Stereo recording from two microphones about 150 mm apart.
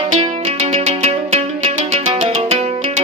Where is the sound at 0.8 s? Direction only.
45° right (ahead or behind).